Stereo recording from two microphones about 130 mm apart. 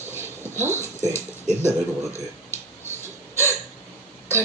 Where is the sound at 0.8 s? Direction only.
60° right (ahead or behind).